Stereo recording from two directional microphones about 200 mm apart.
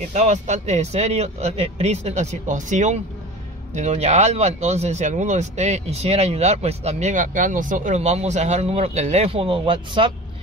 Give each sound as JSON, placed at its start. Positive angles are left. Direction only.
{"t": 0.1, "sound": "speech", "side_deg": -35}